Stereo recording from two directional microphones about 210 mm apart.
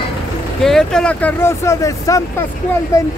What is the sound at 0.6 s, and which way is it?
Speech, centre (ahead or behind).